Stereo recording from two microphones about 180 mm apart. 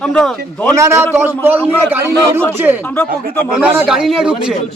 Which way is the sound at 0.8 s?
15° right (ahead or behind).